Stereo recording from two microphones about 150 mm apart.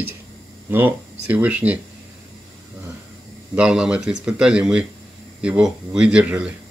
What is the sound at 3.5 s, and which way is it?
Speech, 5° right (ahead or behind).